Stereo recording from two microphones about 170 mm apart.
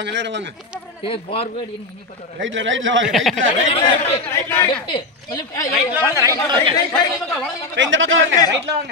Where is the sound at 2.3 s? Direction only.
90° right.